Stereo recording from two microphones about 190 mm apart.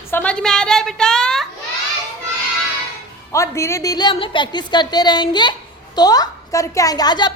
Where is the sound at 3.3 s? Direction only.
15° left (ahead or behind).